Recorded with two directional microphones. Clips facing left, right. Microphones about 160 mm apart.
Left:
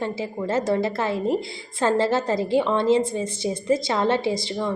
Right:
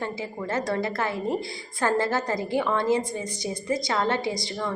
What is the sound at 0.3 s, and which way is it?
A woman's voice, 20° left (ahead or behind).